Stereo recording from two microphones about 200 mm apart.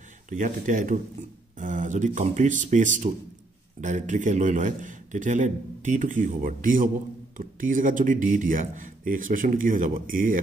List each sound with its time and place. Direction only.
0.3 s a man's voice: 40° right (ahead or behind)